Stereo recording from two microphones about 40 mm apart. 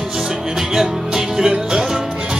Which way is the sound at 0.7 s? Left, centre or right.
Centre.